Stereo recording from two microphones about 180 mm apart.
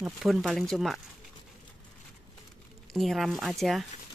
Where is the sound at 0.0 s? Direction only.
Centre (ahead or behind).